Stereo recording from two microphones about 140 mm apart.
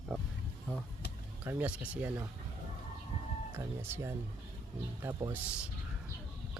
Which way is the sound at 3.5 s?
15° right (ahead or behind).